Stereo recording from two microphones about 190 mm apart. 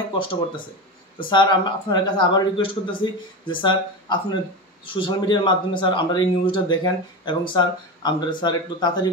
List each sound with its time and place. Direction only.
1.3 s speech: 25° left (ahead or behind)